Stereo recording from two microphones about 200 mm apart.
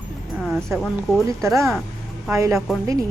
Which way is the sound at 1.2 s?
15° right (ahead or behind).